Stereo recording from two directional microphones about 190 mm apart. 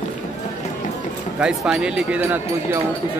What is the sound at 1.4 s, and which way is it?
Speech, 5° right (ahead or behind).